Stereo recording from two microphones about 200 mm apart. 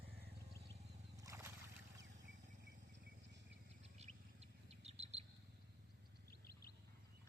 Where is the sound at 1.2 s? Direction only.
15° right (ahead or behind).